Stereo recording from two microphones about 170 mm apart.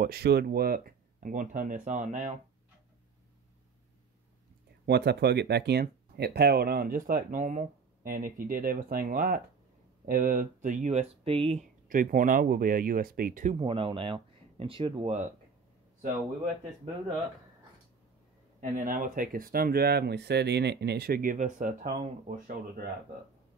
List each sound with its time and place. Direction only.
0.0 s speech: 65° right (ahead or behind); by 2.3 s 45° right (ahead or behind)
4.8 s speech: 75° right (ahead or behind); by 13.6 s 50° right (ahead or behind)
13.6 s speech: 30° right (ahead or behind)
18.6 s speech: 50° right (ahead or behind)